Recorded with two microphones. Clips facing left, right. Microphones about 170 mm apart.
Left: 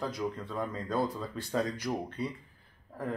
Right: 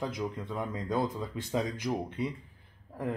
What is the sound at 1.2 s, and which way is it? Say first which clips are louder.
Speech: even; 15° right (ahead or behind).